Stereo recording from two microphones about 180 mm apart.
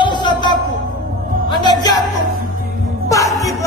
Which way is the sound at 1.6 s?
25° left (ahead or behind).